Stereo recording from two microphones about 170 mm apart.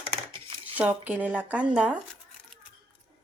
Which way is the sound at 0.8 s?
10° right (ahead or behind).